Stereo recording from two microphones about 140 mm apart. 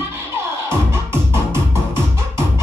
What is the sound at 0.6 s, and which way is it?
Music, 20° right (ahead or behind).